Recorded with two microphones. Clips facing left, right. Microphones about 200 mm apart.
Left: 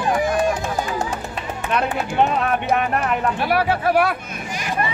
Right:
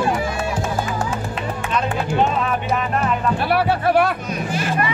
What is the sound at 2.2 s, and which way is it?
Music, 60° left (ahead or behind).